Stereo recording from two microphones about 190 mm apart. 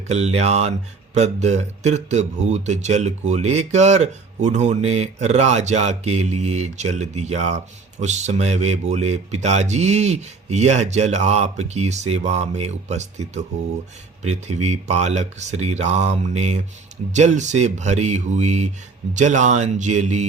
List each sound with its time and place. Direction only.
0.1 s speech: 35° right (ahead or behind)